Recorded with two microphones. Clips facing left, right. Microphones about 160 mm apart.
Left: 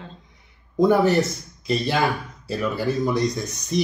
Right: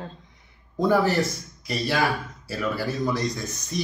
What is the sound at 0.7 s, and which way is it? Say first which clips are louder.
Speech: left 4 dB; 20° left (ahead or behind).